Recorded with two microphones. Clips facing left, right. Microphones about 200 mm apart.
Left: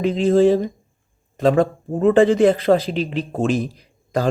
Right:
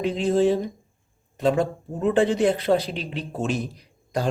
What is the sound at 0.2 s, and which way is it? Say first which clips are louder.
A man's voice: left 6 dB; 90° left.